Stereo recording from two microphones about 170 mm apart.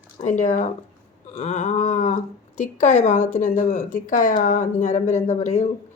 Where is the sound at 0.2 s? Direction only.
45° left (ahead or behind).